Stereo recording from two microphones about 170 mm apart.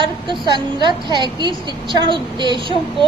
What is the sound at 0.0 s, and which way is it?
A woman's voice, 30° right (ahead or behind).